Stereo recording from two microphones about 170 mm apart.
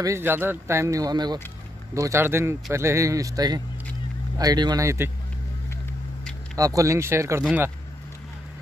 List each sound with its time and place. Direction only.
0.0 s speech: 15° right (ahead or behind)
6.5 s speech: 20° right (ahead or behind)